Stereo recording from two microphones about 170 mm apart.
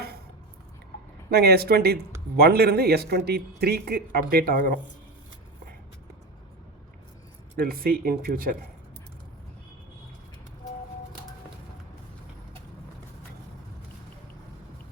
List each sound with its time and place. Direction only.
1.3 s speech: 70° right (ahead or behind)
7.6 s speech: 60° right (ahead or behind)